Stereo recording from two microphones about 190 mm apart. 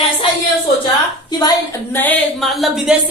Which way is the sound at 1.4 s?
20° left (ahead or behind).